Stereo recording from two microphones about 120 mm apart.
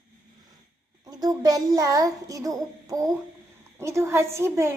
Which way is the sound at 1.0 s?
30° right (ahead or behind).